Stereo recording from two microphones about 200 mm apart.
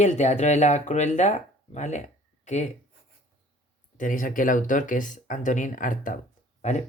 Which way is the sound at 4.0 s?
40° left (ahead or behind).